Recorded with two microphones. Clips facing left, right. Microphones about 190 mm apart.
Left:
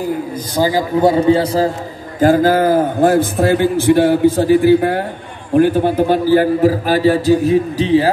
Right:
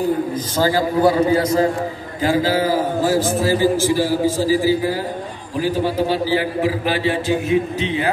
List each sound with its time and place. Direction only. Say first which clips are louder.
0.6 s a man's voice: left 3 dB; 20° left (ahead or behind)
1.2 s a man's voice: left 3 dB; 30° left (ahead or behind)
2.1 s a man's voice: left 6 dB; 50° left (ahead or behind)